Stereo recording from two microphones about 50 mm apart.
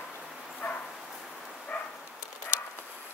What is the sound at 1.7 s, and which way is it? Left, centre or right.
Dog, left.